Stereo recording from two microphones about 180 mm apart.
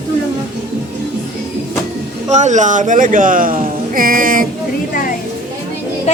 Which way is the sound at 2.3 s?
40° right (ahead or behind).